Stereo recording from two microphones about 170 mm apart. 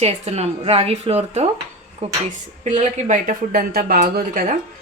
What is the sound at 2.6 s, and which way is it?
A woman's voice, 45° right (ahead or behind).